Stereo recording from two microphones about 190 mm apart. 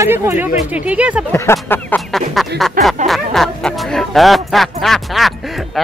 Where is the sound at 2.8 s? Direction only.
45° right (ahead or behind).